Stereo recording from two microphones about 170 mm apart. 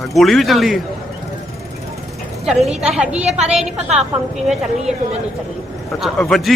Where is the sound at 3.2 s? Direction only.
40° right (ahead or behind).